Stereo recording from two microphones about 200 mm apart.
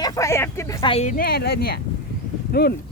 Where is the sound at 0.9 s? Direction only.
35° left (ahead or behind).